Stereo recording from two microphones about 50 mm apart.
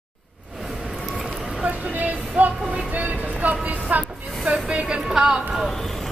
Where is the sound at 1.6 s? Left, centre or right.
Right.